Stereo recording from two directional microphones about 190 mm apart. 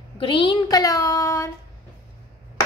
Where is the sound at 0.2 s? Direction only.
25° left (ahead or behind).